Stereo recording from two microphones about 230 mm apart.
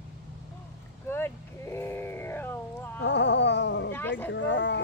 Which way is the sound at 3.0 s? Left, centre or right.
Left.